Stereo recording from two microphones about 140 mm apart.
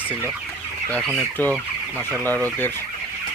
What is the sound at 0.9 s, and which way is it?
Speech, 5° left (ahead or behind).